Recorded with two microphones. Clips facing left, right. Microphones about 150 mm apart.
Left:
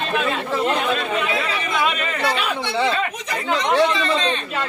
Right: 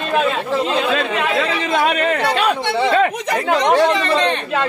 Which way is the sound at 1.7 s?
45° right (ahead or behind).